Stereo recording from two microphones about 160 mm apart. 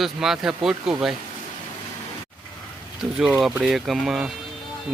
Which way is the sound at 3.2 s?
5° right (ahead or behind).